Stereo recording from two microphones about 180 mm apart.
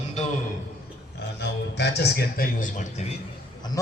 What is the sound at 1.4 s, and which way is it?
Speech, 70° left (ahead or behind).